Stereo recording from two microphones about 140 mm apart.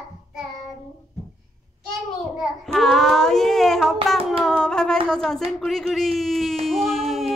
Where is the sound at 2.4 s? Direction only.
Centre (ahead or behind).